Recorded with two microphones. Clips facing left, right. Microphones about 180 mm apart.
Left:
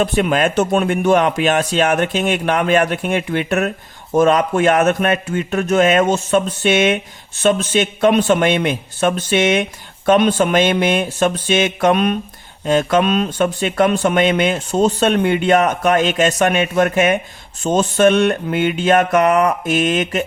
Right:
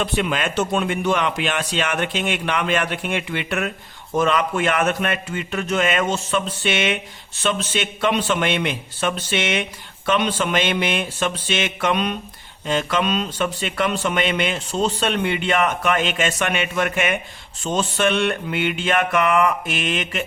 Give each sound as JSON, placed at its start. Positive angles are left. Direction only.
{"t": 0.0, "sound": "speech", "side_deg": 45}